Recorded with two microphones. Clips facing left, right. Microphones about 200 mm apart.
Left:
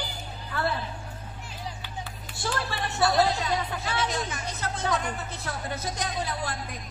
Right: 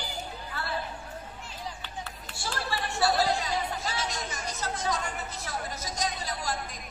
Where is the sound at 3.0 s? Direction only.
60° left (ahead or behind).